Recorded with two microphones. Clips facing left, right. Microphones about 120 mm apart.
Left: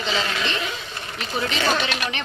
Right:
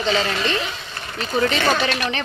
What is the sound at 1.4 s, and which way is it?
Speech, 40° right (ahead or behind).